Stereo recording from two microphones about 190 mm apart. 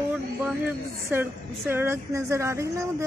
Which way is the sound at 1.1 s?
10° right (ahead or behind).